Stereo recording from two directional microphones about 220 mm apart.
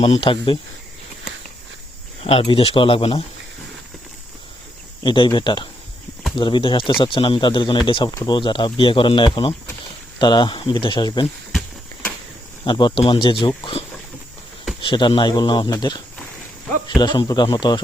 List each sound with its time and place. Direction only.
0.0 s speech: 25° left (ahead or behind)
2.2 s speech: 25° left (ahead or behind)
5.0 s speech: 20° left (ahead or behind)
12.6 s speech: 20° left (ahead or behind)
14.8 s speech: 20° left (ahead or behind)